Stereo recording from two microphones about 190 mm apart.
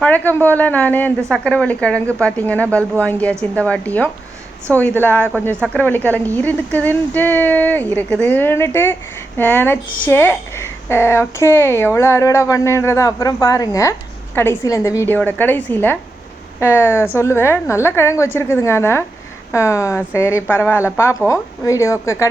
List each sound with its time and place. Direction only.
0.0 s speech: 10° left (ahead or behind)